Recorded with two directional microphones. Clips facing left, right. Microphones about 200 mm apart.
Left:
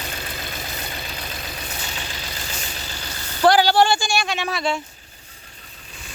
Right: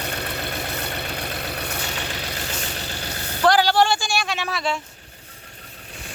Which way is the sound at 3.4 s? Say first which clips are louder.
Left 2 dB; centre (ahead or behind).